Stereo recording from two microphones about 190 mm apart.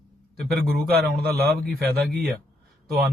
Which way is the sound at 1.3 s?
55° right (ahead or behind).